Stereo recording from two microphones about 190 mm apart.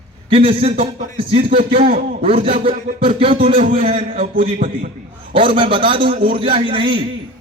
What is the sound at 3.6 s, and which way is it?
Speech, 45° right (ahead or behind).